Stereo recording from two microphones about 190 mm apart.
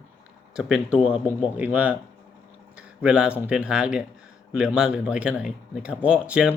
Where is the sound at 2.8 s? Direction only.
5° right (ahead or behind).